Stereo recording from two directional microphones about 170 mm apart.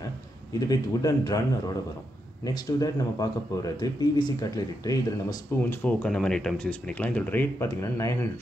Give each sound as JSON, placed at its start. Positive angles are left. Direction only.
{"t": 0.5, "sound": "speech", "side_deg": 20}
{"t": 2.4, "sound": "speech", "side_deg": 20}
{"t": 5.6, "sound": "speech", "side_deg": 10}